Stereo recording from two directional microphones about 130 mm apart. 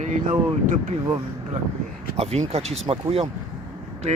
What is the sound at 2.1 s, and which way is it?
Speech, 50° right (ahead or behind).